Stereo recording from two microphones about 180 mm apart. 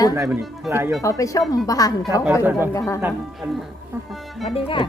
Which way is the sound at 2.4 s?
10° right (ahead or behind).